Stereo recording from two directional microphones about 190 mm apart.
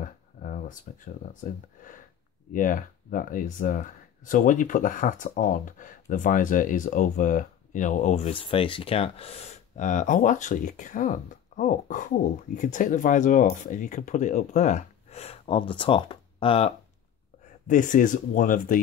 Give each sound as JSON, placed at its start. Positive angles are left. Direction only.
{"t": 0.0, "sound": "a sound", "side_deg": 45}
{"t": 2.5, "sound": "speech", "side_deg": 45}
{"t": 17.6, "sound": "speech", "side_deg": 45}